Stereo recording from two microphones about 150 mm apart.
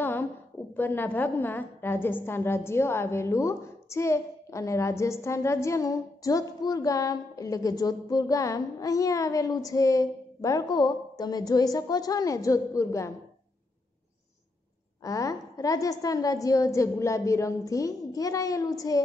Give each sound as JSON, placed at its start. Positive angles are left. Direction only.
{"t": 0.0, "sound": "a sound", "side_deg": 15}
{"t": 0.7, "sound": "a woman's voice", "side_deg": 15}
{"t": 15.0, "sound": "a woman's voice", "side_deg": 20}